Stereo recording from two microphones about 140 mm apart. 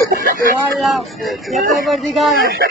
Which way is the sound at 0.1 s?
85° right.